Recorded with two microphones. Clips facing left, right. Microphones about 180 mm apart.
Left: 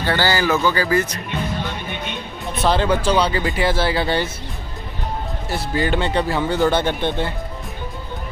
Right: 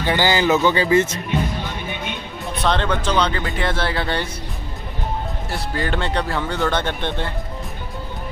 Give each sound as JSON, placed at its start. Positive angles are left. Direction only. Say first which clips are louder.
{"t": 0.0, "sound": "speech", "louder": "right 1 dB", "side_deg": -15}
{"t": 2.5, "sound": "speech", "louder": "left 3 dB", "side_deg": 5}
{"t": 5.5, "sound": "speech", "louder": "left 4 dB", "side_deg": 5}